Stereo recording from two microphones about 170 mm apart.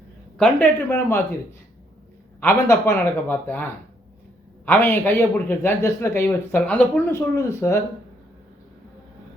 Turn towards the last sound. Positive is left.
turn(degrees=20)  # may be behind; listen again after turning